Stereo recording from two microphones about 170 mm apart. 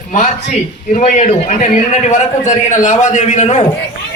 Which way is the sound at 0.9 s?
45° left (ahead or behind).